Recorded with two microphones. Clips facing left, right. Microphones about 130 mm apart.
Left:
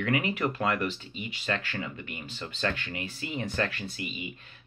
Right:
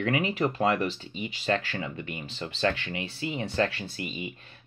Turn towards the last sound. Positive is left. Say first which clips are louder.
# right 1 dB
turn(degrees=-30)  # may be behind; listen again after turning